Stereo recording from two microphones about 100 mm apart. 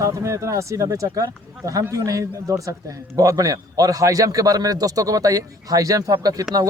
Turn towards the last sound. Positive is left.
turn(degrees=-40)  # may be behind; listen again after turning